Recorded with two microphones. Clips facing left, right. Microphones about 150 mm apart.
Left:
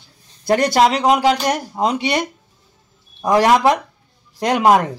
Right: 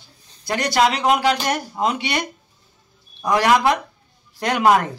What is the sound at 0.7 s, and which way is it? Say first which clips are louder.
A man's voice: even; 35° left (ahead or behind).